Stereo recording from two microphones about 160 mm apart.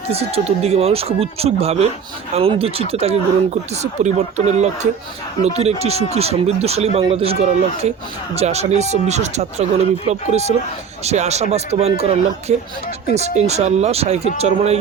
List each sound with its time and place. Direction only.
0.1 s speech: 40° right (ahead or behind)
13.1 s speech: 45° right (ahead or behind)